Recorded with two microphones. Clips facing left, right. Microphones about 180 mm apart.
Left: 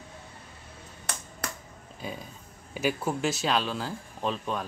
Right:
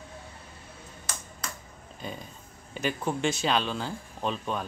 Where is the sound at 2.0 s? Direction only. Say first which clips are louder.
Left 1 dB; 5° left (ahead or behind).